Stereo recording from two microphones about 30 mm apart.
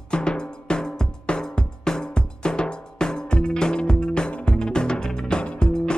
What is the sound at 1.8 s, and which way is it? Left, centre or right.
Drum, left.